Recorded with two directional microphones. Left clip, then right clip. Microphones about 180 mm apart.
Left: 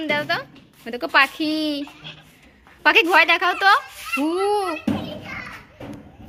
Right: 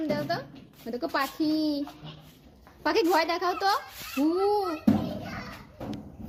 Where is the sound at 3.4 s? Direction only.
20° left (ahead or behind).